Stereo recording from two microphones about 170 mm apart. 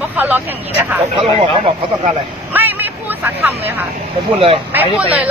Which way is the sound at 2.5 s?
10° right (ahead or behind).